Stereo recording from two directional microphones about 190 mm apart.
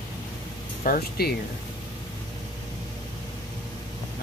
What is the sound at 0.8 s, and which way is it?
Speech, 55° left (ahead or behind).